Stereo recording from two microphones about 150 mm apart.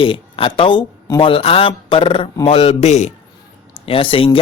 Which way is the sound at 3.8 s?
35° left (ahead or behind).